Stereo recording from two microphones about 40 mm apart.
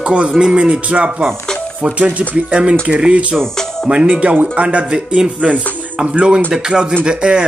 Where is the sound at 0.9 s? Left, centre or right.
Right.